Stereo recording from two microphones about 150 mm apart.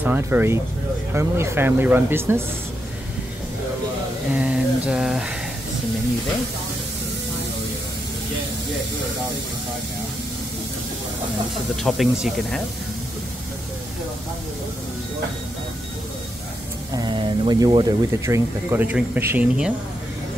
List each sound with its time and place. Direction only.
0.0 s speech: 10° right (ahead or behind)
4.3 s a sound: 10° right (ahead or behind)
11.7 s speech: centre (ahead or behind)
16.9 s speech: 30° right (ahead or behind)
18.2 s speech: 20° right (ahead or behind)